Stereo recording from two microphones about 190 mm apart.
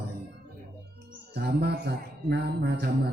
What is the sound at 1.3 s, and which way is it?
Music, 55° right (ahead or behind).